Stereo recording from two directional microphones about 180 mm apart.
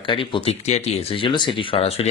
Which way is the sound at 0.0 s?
25° left (ahead or behind).